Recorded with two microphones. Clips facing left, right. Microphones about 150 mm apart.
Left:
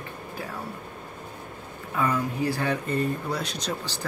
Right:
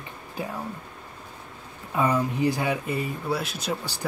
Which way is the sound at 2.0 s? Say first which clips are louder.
Right 3 dB; 20° right (ahead or behind).